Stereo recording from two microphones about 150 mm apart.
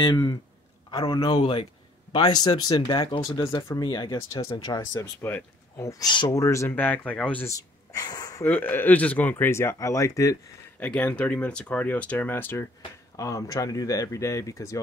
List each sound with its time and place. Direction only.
0.0 s speech: 30° left (ahead or behind); by 7.4 s 10° left (ahead or behind)
7.4 s speech: 25° left (ahead or behind)
8.5 s speech: 10° left (ahead or behind)
10.8 s speech: 10° left (ahead or behind)